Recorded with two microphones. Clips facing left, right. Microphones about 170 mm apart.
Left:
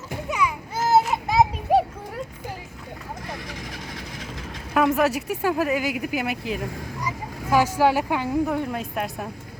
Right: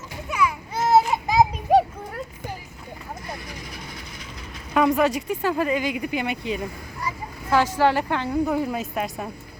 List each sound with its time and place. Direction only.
0.3 s a sound: 20° left (ahead or behind)
0.9 s children playing: centre (ahead or behind)
4.7 s a woman's voice: 5° left (ahead or behind)
8.4 s speech: 5° right (ahead or behind)